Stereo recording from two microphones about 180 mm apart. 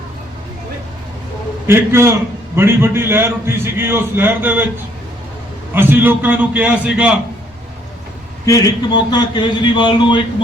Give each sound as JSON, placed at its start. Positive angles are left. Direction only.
{"t": 1.6, "sound": "a man's voice", "side_deg": -15}
{"t": 5.7, "sound": "a man's voice", "side_deg": -10}
{"t": 8.4, "sound": "a man's voice", "side_deg": 20}